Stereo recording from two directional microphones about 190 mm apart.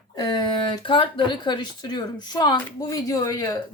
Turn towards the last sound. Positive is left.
turn(degrees=15)  # may be behind; listen again after turning